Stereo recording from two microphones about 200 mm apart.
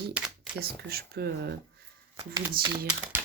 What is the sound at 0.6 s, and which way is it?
Speech, 50° right (ahead or behind).